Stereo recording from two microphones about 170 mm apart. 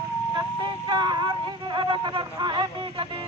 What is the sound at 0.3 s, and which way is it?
Speech, 25° right (ahead or behind).